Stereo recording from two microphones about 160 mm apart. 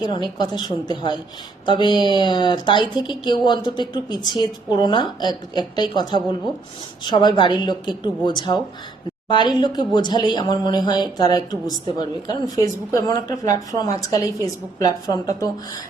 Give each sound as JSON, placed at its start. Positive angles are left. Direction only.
{"t": 0.0, "sound": "a woman's voice", "side_deg": 25}